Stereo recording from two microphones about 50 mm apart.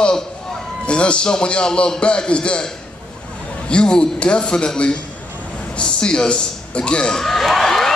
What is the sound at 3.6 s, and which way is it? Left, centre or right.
Music, centre.